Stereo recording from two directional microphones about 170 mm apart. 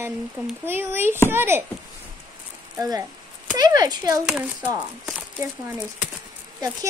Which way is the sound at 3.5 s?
20° right (ahead or behind).